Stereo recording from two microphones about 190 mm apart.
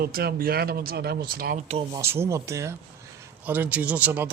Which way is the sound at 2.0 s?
15° right (ahead or behind).